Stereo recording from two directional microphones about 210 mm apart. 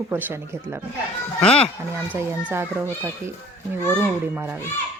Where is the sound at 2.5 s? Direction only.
10° right (ahead or behind).